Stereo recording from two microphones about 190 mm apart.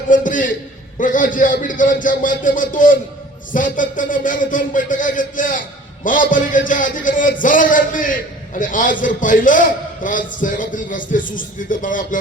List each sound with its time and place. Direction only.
0.1 s a man's voice: 45° left (ahead or behind)